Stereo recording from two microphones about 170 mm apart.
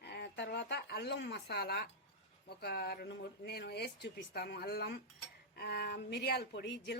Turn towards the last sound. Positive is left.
turn(degrees=80)